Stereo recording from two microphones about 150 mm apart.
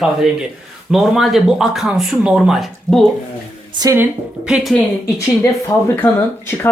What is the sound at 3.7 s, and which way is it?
Speech, 25° right (ahead or behind).